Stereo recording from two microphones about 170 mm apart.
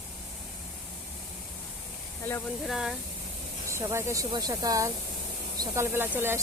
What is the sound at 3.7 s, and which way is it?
Speech, 15° right (ahead or behind).